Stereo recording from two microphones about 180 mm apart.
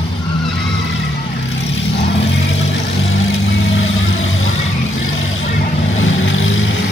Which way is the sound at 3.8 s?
90° left.